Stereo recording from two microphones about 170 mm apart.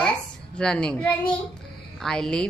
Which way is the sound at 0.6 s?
5° left (ahead or behind).